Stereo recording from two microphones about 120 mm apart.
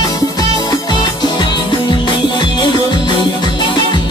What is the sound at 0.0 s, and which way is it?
Music, 30° left (ahead or behind).